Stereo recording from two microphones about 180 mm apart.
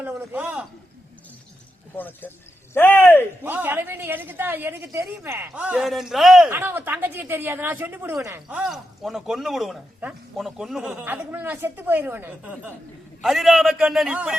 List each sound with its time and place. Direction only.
0.0 s a sound: 10° right (ahead or behind)
2.0 s speech: 10° left (ahead or behind)
3.4 s a woman's voice: 10° right (ahead or behind)
6.5 s a woman's voice: 10° right (ahead or behind)